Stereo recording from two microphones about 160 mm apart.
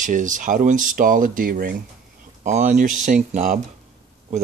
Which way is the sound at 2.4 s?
50° right (ahead or behind).